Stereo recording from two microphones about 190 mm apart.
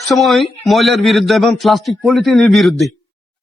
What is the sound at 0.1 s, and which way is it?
A man's voice, centre (ahead or behind).